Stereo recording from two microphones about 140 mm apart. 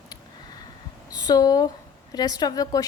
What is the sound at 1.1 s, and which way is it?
A woman's voice, 25° left (ahead or behind).